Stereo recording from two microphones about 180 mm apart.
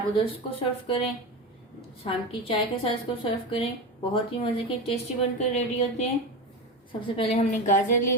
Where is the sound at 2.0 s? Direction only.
30° left (ahead or behind).